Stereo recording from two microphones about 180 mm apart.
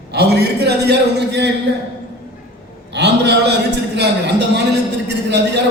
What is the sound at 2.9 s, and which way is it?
A man's voice, 70° right (ahead or behind).